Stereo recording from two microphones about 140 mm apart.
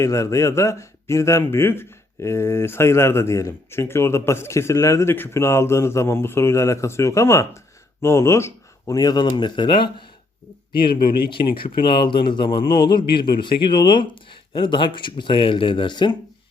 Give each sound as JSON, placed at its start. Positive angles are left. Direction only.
{"t": 0.0, "sound": "speech", "side_deg": 20}
{"t": 11.3, "sound": "speech", "side_deg": 35}